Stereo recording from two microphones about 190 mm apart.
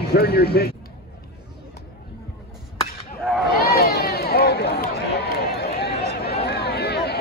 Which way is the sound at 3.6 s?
55° left (ahead or behind).